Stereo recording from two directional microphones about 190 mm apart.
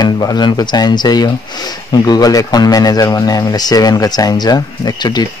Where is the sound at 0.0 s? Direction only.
20° left (ahead or behind).